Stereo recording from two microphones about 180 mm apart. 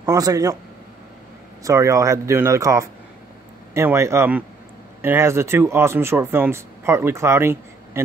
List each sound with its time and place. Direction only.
0.0 s speech: 20° right (ahead or behind)
1.6 s speech: 15° right (ahead or behind)